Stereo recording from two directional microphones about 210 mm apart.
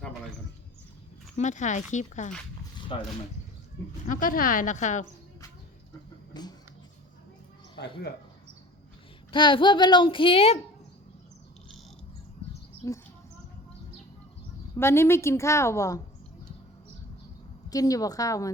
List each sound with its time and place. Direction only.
1.4 s a woman's voice: 35° left (ahead or behind)
4.0 s speech: 40° left (ahead or behind)
6.3 s a sound: 20° left (ahead or behind)
7.8 s speech: 55° left (ahead or behind)
9.3 s a woman's voice: 20° left (ahead or behind)
12.8 s a woman's voice: 15° left (ahead or behind)
14.8 s a woman's voice: 10° left (ahead or behind)
17.7 s a woman's voice: 15° left (ahead or behind)